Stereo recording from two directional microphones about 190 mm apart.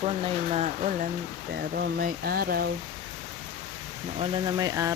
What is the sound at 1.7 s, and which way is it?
Speech, 55° right (ahead or behind).